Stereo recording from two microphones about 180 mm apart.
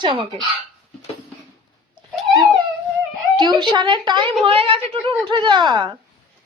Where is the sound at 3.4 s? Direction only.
25° right (ahead or behind).